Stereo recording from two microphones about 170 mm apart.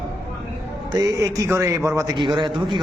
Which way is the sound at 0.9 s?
20° right (ahead or behind).